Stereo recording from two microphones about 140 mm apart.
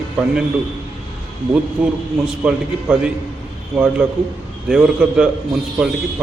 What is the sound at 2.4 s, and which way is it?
A man's voice, 5° right (ahead or behind).